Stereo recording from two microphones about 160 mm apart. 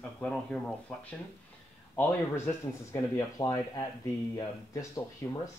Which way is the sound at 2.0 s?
15° left (ahead or behind).